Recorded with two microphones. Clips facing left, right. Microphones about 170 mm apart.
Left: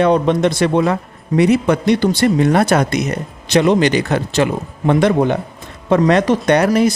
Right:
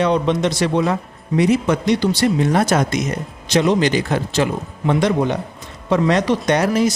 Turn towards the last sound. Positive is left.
turn(degrees=60)  # may be behind; listen again after turning